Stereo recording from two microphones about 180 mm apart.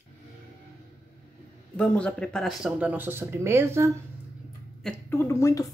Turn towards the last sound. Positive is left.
turn(degrees=15)  # may be behind; listen again after turning